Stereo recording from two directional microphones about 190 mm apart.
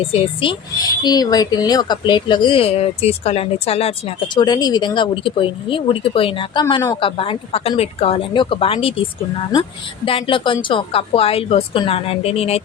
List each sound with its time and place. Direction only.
0.1 s speech: 30° left (ahead or behind)
0.8 s speech: 20° left (ahead or behind)
10.1 s speech: 30° left (ahead or behind)